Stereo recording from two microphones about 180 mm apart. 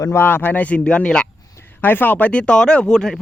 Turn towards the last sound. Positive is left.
turn(degrees=5)  # may be behind; listen again after turning